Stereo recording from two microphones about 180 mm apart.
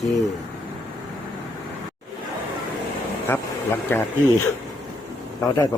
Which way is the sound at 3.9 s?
10° left (ahead or behind).